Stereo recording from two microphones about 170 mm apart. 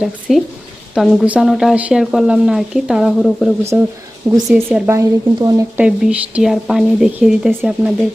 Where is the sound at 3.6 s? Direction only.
15° right (ahead or behind).